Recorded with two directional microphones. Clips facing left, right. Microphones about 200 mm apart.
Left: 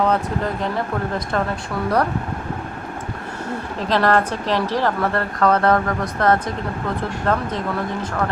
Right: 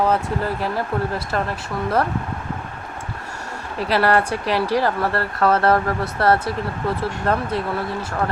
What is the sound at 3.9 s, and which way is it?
Speech, 10° right (ahead or behind).